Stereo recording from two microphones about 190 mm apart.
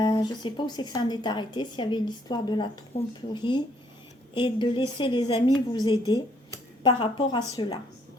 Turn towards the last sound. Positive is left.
turn(degrees=25)  # may be behind; listen again after turning